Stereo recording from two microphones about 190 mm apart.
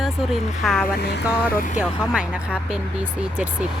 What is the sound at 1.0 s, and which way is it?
Speech, 60° left (ahead or behind).